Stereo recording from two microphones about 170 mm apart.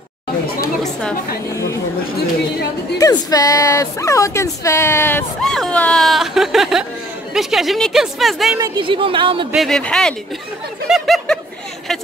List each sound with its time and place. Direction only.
1.5 s speech: 15° left (ahead or behind)
3.0 s speech: 20° left (ahead or behind)
5.4 s speech: 5° left (ahead or behind)
8.5 s a woman's voice: 25° right (ahead or behind)
9.5 s speech: centre (ahead or behind)
10.9 s a sound: centre (ahead or behind)